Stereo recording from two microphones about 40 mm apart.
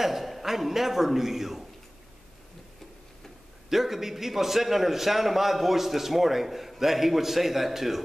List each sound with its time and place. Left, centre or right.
0.0 s a man's voice: centre
3.7 s a man's voice: centre